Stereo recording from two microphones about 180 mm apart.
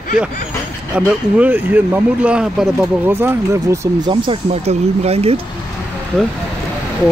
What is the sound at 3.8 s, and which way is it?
Speech, 25° right (ahead or behind).